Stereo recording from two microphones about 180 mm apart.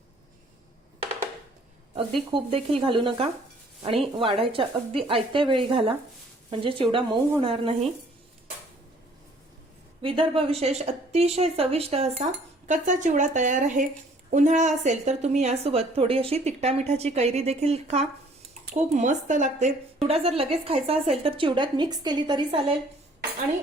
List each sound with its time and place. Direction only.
2.3 s speech: 30° right (ahead or behind)
10.0 s speech: 30° right (ahead or behind)